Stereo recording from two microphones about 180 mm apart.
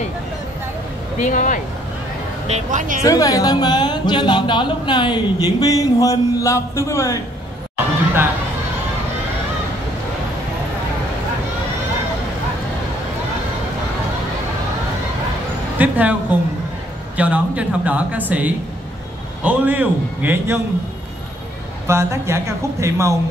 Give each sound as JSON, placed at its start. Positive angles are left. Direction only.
{"t": 1.2, "sound": "speech", "side_deg": 45}
{"t": 2.5, "sound": "speech", "side_deg": -45}
{"t": 3.0, "sound": "speech", "side_deg": 20}
{"t": 15.8, "sound": "a sound", "side_deg": -10}
{"t": 17.2, "sound": "speech", "side_deg": -10}
{"t": 21.8, "sound": "speech", "side_deg": -15}